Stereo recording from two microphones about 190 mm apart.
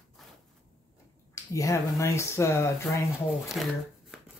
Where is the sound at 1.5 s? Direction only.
15° left (ahead or behind).